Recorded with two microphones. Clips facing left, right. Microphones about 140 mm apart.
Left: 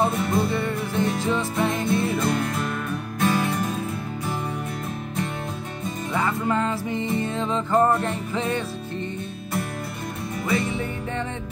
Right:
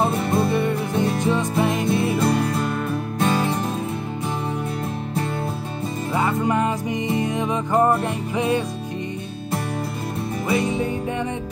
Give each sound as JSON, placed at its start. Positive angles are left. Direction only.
{"t": 0.0, "sound": "music", "side_deg": -25}
{"t": 6.2, "sound": "music", "side_deg": -20}
{"t": 10.5, "sound": "music", "side_deg": -20}